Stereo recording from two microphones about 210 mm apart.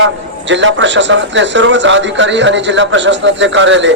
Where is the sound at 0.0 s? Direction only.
60° right (ahead or behind).